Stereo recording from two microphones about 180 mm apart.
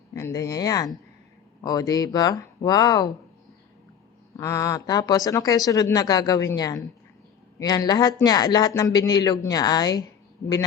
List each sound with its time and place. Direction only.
0.1 s speech: 15° left (ahead or behind)
4.4 s speech: 15° left (ahead or behind)